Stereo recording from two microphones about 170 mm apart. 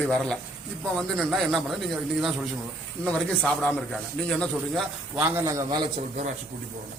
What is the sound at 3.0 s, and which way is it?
A man's voice, 5° left (ahead or behind).